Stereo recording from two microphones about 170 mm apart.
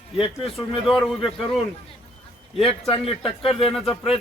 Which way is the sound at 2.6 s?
35° left (ahead or behind).